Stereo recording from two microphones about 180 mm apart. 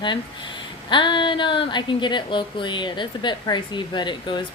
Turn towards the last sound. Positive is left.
turn(degrees=25)  # may be behind; listen again after turning